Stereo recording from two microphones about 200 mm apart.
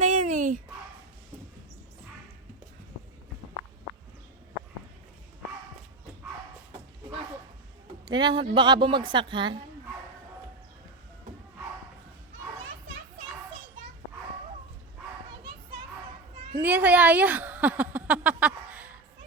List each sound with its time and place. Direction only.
0.0 s dog: 35° right (ahead or behind)
8.0 s a woman's voice: 20° right (ahead or behind)
16.6 s a sound: 10° right (ahead or behind)